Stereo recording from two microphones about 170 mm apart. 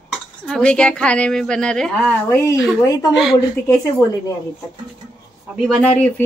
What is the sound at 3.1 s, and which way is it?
Speech, 5° right (ahead or behind).